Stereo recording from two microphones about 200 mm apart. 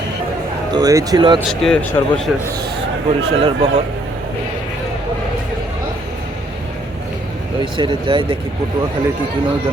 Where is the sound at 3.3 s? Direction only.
30° right (ahead or behind).